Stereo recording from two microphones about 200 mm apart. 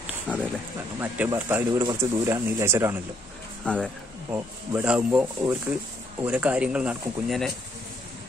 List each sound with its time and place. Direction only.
0.3 s speech: 5° right (ahead or behind)
3.6 s speech: 5° left (ahead or behind)
4.3 s speech: 10° right (ahead or behind)